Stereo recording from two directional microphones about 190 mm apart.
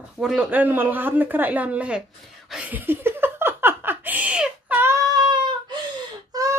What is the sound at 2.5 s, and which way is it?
Laughter, 5° right (ahead or behind).